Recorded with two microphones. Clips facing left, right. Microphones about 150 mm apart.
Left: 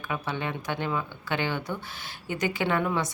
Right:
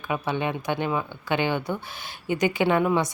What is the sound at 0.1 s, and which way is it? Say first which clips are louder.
A woman's voice: right 5 dB; 15° right (ahead or behind).